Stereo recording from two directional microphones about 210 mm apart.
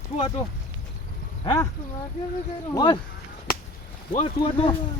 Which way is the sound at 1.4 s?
15° left (ahead or behind).